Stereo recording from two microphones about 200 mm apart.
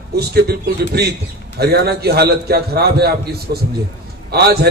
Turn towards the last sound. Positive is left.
turn(degrees=-55)  # may be behind; listen again after turning